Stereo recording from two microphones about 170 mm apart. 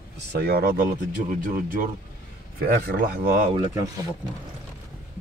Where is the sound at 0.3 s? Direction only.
65° right (ahead or behind).